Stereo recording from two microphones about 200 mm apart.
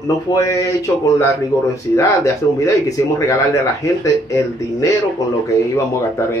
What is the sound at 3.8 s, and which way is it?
Speech, 15° left (ahead or behind).